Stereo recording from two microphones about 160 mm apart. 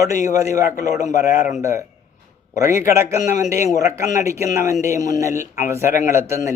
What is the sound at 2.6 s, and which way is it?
A man's voice, 15° right (ahead or behind).